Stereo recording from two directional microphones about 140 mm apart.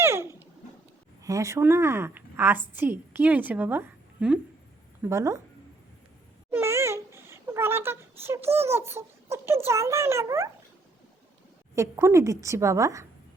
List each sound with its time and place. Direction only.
0.0 s a sound: 15° right (ahead or behind)
1.2 s a woman's voice: 20° right (ahead or behind)
6.5 s babbling: 15° right (ahead or behind)
9.6 s a woman's voice: 20° right (ahead or behind)
11.7 s a woman's voice: 20° right (ahead or behind)